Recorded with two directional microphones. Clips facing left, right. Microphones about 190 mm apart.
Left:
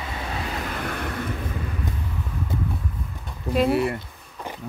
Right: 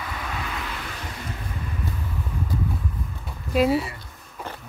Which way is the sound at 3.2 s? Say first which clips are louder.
Even; 5° right (ahead or behind).